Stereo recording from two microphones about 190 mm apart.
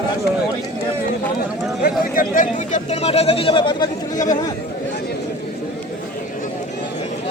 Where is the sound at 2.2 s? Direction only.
45° left (ahead or behind); by 4.2 s 25° left (ahead or behind).